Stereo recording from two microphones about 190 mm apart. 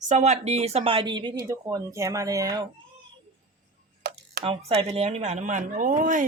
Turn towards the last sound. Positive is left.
turn(degrees=-45)  # may be behind; listen again after turning